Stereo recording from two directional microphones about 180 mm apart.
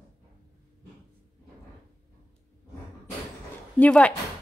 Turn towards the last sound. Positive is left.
turn(degrees=5)  # may be behind; listen again after turning